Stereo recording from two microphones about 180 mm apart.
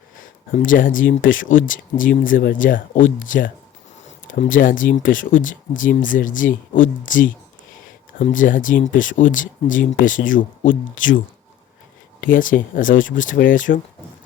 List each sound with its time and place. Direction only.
0.5 s speech: 50° left (ahead or behind)
12.2 s speech: 50° left (ahead or behind)